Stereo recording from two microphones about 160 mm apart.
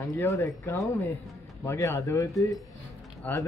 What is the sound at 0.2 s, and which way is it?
Speech, 15° left (ahead or behind).